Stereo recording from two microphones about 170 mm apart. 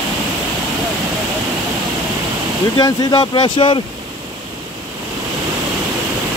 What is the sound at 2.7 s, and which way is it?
Speech, 25° left (ahead or behind).